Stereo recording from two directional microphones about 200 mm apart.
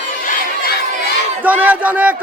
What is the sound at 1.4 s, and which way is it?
Speech, 10° right (ahead or behind).